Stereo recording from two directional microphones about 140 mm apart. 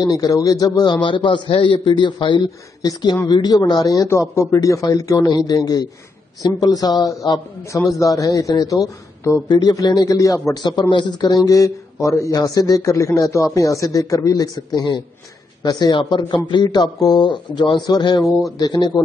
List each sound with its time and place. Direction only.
0.0 s a man's voice: 30° left (ahead or behind)
1.0 s a man's voice: 35° left (ahead or behind)